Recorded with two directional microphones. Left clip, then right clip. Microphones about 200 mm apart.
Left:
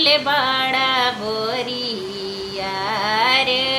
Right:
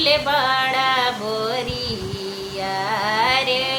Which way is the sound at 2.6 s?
10° left (ahead or behind).